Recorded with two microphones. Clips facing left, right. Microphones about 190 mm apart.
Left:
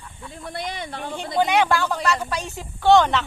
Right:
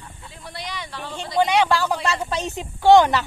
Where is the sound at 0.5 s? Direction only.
50° left (ahead or behind).